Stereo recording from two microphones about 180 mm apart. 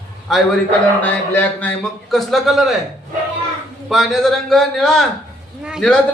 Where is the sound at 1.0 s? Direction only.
10° left (ahead or behind).